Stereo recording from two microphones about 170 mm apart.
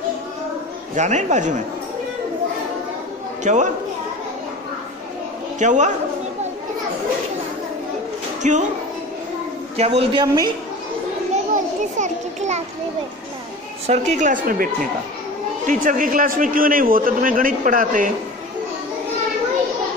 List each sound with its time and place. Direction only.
0.9 s a man's voice: 45° right (ahead or behind)
3.4 s a man's voice: 45° right (ahead or behind)
5.6 s a man's voice: 45° right (ahead or behind)
8.4 s a woman's voice: 45° right (ahead or behind)
9.8 s a man's voice: 35° right (ahead or behind)
10.2 s a woman's voice: 20° right (ahead or behind)
11.5 s children playing: 45° right (ahead or behind)
13.8 s a man's voice: 45° right (ahead or behind)